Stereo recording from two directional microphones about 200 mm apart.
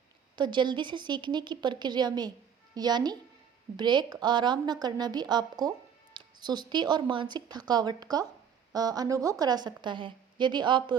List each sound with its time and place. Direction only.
0.3 s a woman's voice: 20° right (ahead or behind)